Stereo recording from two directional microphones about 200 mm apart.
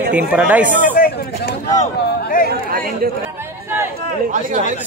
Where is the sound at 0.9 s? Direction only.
45° left (ahead or behind).